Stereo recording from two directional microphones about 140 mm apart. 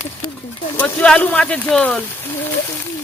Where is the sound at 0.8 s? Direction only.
10° left (ahead or behind).